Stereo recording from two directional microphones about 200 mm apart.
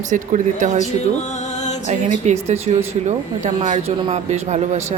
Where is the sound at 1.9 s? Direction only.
35° right (ahead or behind).